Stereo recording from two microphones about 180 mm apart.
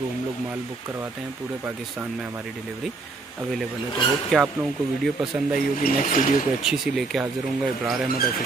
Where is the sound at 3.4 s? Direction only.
Centre (ahead or behind).